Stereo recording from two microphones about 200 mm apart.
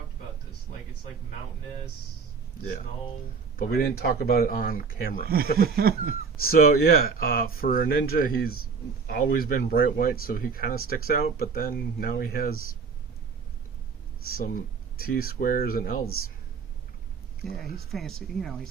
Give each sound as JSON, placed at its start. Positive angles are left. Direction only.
{"t": 3.8, "sound": "speech", "side_deg": 50}
{"t": 5.7, "sound": "a sound", "side_deg": -50}
{"t": 6.4, "sound": "speech", "side_deg": 50}
{"t": 14.3, "sound": "speech", "side_deg": 45}
{"t": 17.9, "sound": "speech", "side_deg": 0}